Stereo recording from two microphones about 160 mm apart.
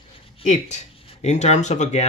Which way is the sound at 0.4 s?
45° left (ahead or behind).